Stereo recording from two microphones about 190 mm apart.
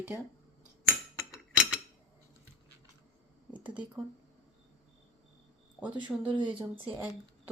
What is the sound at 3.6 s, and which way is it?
Speech, 10° right (ahead or behind).